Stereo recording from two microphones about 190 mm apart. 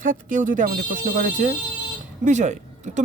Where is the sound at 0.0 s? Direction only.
45° right (ahead or behind).